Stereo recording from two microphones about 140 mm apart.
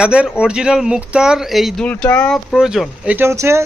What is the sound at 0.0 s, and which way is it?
A man's voice, 5° right (ahead or behind).